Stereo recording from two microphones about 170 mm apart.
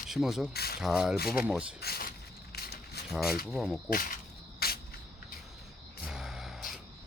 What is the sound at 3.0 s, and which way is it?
Speech, centre (ahead or behind).